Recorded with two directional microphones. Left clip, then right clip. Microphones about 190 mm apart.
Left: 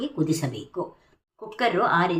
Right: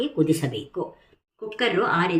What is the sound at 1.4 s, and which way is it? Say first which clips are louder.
Speech: even; 30° left (ahead or behind).